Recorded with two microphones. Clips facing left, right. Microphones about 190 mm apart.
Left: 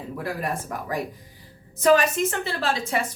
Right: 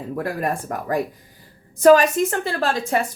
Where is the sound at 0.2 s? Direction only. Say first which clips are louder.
Right 4 dB; 50° right (ahead or behind).